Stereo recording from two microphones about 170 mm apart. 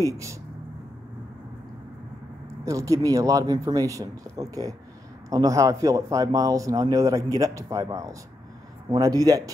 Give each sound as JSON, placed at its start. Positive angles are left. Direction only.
{"t": 0.0, "sound": "speech", "side_deg": -20}
{"t": 2.6, "sound": "speech", "side_deg": -20}